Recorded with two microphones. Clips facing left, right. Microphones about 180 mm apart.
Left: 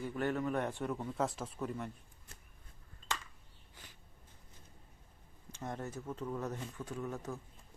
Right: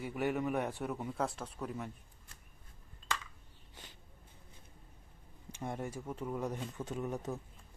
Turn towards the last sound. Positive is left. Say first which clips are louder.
# right 3 dB
turn(degrees=-20)  # may be behind; listen again after turning